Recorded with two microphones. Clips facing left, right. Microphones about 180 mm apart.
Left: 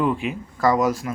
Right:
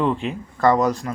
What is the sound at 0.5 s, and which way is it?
Speech, 5° left (ahead or behind).